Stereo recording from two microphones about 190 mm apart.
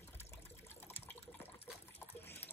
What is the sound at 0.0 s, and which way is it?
Water, 10° left (ahead or behind).